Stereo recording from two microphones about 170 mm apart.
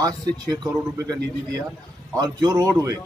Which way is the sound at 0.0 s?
20° right (ahead or behind).